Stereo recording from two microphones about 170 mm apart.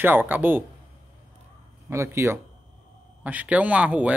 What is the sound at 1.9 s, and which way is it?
Speech, 15° right (ahead or behind).